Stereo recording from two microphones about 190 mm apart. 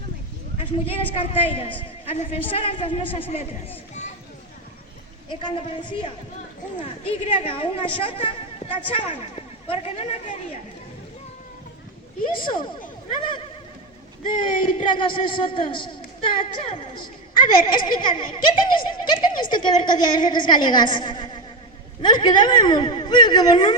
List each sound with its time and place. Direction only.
0.9 s speech: 30° left (ahead or behind)
5.3 s speech: 25° left (ahead or behind)
7.0 s speech: 30° left (ahead or behind)
12.5 s speech: 25° left (ahead or behind)
14.5 s speech: 25° left (ahead or behind)